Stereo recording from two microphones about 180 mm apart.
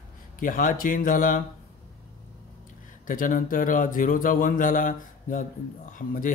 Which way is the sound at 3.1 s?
50° left (ahead or behind).